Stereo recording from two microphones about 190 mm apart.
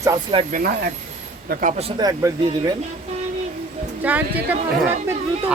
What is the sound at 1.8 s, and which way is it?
Speech, 20° right (ahead or behind).